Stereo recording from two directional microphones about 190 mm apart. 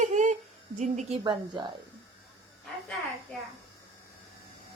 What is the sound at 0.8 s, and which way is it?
Speech, 35° right (ahead or behind).